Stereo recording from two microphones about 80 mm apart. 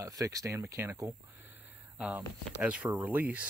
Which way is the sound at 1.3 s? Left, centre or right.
Right.